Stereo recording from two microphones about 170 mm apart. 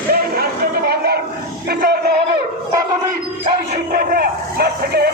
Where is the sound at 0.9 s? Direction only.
65° right (ahead or behind).